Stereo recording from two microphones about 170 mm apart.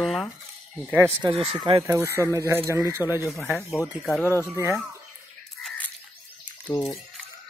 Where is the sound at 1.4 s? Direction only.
35° right (ahead or behind).